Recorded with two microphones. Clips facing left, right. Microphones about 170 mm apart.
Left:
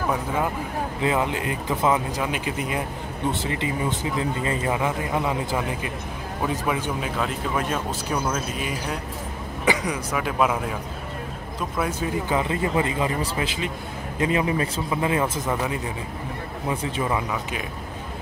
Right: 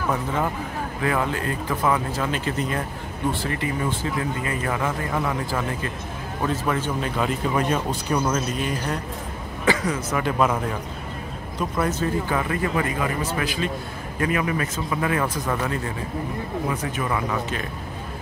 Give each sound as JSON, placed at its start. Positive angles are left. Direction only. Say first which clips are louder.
{"t": 0.1, "sound": "speech", "louder": "right 2 dB", "side_deg": 10}
{"t": 11.9, "sound": "speech", "louder": "right 1 dB", "side_deg": 15}
{"t": 16.7, "sound": "speech", "louder": "left 1 dB", "side_deg": 30}
{"t": 17.3, "sound": "speech", "louder": "right 2 dB", "side_deg": 10}